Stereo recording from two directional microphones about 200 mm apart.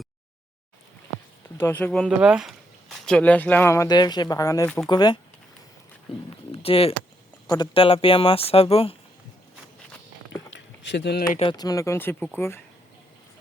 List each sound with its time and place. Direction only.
1.5 s speech: 10° left (ahead or behind); by 9.0 s 30° left (ahead or behind)
10.5 s a sound: 60° left (ahead or behind)
11.3 s speech: 20° left (ahead or behind)